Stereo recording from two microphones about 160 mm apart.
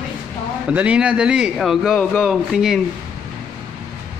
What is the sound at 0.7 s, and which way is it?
A man's voice, 10° right (ahead or behind).